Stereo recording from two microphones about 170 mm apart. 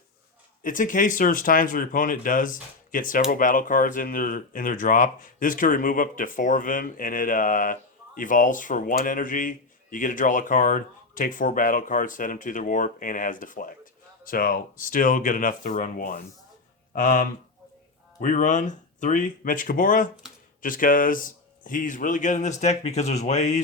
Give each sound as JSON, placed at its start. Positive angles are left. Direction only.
{"t": 0.6, "sound": "speech", "side_deg": 50}